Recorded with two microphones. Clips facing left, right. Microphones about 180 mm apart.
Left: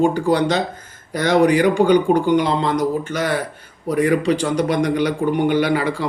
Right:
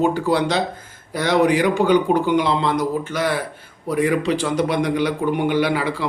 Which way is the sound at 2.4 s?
40° left (ahead or behind).